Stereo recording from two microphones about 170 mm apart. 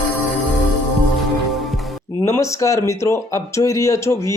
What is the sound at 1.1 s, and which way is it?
Music, centre (ahead or behind).